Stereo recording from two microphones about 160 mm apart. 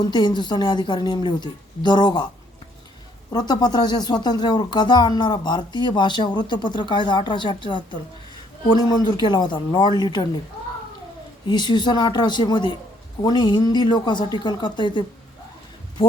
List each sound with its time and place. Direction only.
0.0 s speech: 25° left (ahead or behind)
3.3 s speech: 25° left (ahead or behind)
11.4 s speech: 25° left (ahead or behind)